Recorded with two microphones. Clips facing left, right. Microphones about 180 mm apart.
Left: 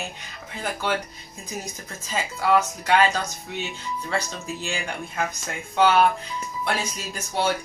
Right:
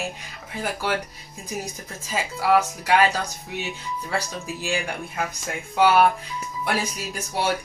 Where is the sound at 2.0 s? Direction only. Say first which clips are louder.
Right 1 dB; 5° right (ahead or behind).